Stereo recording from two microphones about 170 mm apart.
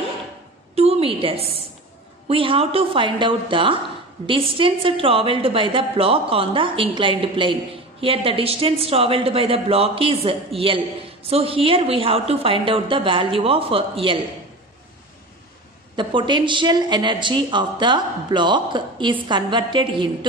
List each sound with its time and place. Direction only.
0.7 s a woman's voice: 35° right (ahead or behind)
16.0 s a woman's voice: 30° right (ahead or behind)